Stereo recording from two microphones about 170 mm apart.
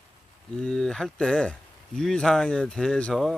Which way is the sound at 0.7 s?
5° left (ahead or behind).